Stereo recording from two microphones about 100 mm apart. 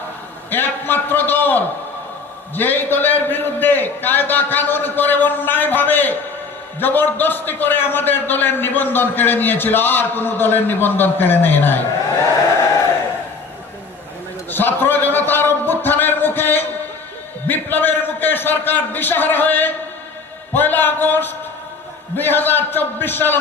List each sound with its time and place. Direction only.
0.5 s a man's voice: 20° left (ahead or behind)
14.5 s a sound: 20° left (ahead or behind)
17.4 s a man's voice: 20° left (ahead or behind)